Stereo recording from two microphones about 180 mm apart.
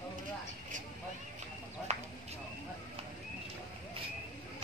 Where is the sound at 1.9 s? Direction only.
40° right (ahead or behind).